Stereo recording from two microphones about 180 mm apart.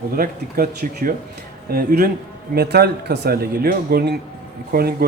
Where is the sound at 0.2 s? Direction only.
55° right (ahead or behind).